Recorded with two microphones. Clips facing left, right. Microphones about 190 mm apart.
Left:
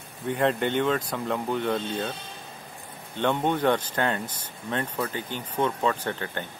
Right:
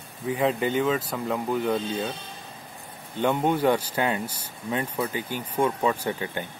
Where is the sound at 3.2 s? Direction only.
10° right (ahead or behind).